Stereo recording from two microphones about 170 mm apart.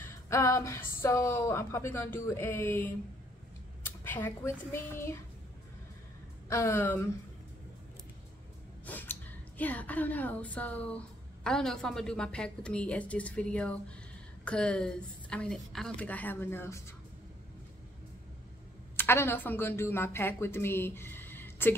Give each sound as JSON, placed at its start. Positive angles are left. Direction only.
{"t": 0.0, "sound": "a woman's voice", "side_deg": 15}
{"t": 3.8, "sound": "a sound", "side_deg": 10}
{"t": 6.5, "sound": "a woman's voice", "side_deg": 15}
{"t": 8.8, "sound": "a woman's voice", "side_deg": 10}
{"t": 18.9, "sound": "speech", "side_deg": 15}